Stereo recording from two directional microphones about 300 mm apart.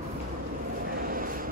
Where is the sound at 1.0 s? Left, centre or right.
Right.